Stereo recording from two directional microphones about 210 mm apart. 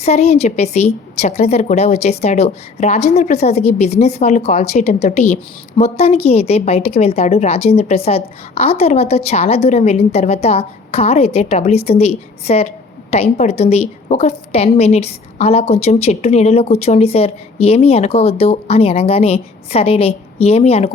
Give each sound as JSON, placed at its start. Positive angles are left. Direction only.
{"t": 0.0, "sound": "speech", "side_deg": 30}